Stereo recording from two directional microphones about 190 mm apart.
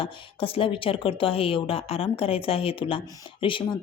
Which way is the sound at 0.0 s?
30° left (ahead or behind).